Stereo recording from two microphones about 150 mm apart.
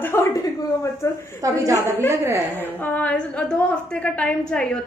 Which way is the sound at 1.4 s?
20° right (ahead or behind).